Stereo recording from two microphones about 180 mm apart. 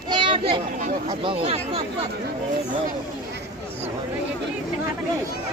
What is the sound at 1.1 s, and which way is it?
Speech, 30° right (ahead or behind).